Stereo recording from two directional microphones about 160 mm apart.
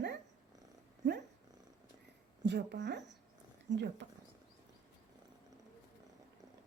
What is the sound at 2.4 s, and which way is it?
Speech, 90° right.